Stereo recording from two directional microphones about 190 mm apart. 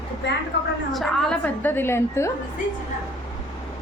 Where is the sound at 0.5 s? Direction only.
60° left (ahead or behind).